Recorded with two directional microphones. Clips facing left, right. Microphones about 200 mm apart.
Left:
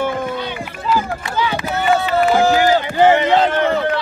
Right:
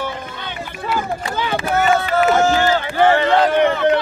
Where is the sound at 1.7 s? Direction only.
50° right (ahead or behind).